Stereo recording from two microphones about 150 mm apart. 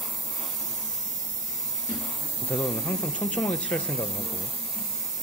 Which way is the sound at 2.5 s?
5° left (ahead or behind).